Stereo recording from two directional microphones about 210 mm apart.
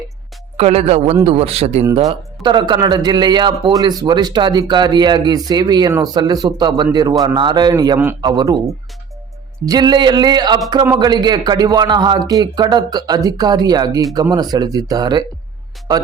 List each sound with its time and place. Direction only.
0.5 s a man's voice: 30° right (ahead or behind)
9.6 s speech: 20° right (ahead or behind)